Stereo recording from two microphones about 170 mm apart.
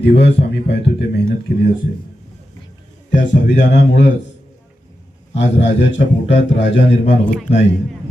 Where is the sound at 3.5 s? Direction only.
45° left (ahead or behind).